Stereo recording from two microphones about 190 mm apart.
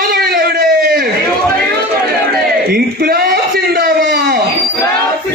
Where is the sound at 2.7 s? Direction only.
50° right (ahead or behind).